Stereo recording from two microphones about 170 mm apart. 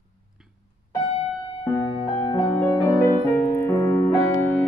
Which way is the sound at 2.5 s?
15° left (ahead or behind).